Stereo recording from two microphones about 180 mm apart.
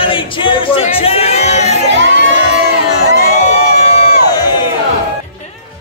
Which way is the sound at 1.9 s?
90° right.